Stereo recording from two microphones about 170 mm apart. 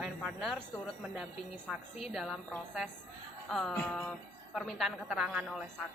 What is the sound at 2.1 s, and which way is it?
Speech, centre (ahead or behind).